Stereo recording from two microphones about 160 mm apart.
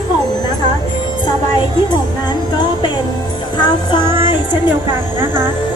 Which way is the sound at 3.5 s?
30° left (ahead or behind).